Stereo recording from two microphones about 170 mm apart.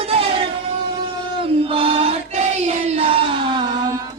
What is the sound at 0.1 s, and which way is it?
Music, 35° right (ahead or behind).